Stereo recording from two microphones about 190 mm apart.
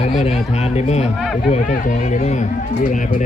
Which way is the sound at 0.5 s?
35° left (ahead or behind).